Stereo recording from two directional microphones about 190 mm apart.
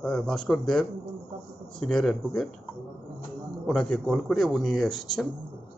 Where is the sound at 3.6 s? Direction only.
5° left (ahead or behind).